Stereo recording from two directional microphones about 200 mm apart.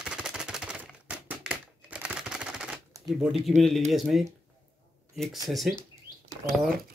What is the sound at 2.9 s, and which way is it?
Speech, 20° right (ahead or behind).